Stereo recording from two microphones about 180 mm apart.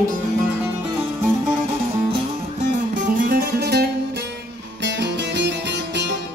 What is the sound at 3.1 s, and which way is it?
Music, 50° right (ahead or behind).